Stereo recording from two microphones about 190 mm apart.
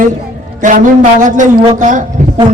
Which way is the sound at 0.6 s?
40° right (ahead or behind).